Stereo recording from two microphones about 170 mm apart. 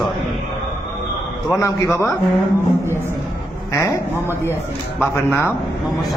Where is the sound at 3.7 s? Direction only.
15° left (ahead or behind).